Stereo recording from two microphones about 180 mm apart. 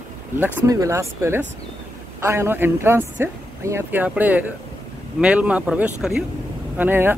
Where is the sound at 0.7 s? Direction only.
15° right (ahead or behind).